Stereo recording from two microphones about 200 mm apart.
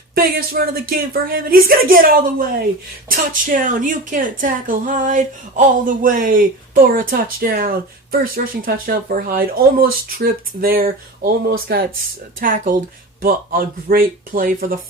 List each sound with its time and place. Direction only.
0.1 s a woman's voice: 45° right (ahead or behind)